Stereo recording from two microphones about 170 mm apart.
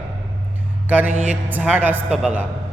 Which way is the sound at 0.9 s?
10° right (ahead or behind).